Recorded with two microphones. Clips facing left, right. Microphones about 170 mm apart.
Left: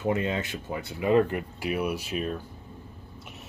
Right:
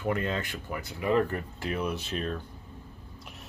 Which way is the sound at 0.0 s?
20° left (ahead or behind).